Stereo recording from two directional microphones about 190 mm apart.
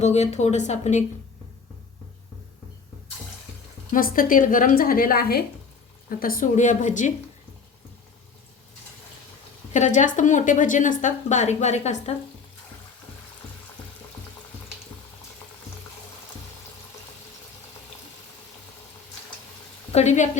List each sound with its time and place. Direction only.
0.0 s speech: 35° left (ahead or behind)
3.9 s a woman's voice: 45° left (ahead or behind)
9.7 s speech: 40° left (ahead or behind)
19.9 s a woman's voice: 35° left (ahead or behind)